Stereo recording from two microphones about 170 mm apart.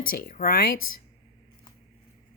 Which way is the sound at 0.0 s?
55° left (ahead or behind).